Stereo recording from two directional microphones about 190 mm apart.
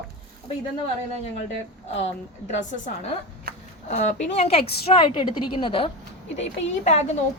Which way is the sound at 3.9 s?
40° left (ahead or behind).